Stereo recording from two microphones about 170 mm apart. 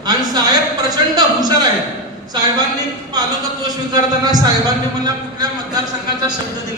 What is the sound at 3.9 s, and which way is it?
Speech, 25° right (ahead or behind).